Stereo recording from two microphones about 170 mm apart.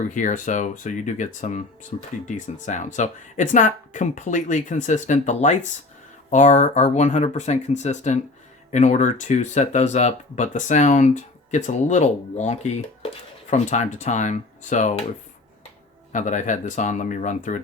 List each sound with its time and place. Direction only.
0.1 s speech: 45° left (ahead or behind)
16.1 s speech: 45° left (ahead or behind)